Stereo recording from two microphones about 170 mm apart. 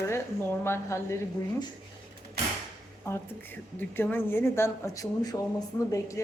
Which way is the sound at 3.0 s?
15° left (ahead or behind).